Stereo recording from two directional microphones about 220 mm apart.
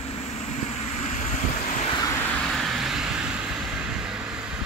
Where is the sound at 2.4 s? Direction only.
Centre (ahead or behind).